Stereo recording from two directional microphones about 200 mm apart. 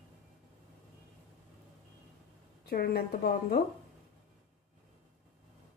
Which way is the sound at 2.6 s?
50° left (ahead or behind).